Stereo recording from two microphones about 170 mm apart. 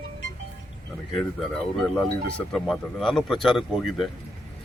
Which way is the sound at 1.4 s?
5° left (ahead or behind).